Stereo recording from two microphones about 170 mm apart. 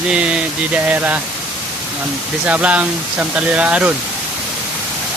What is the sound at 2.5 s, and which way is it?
Speech, 10° right (ahead or behind).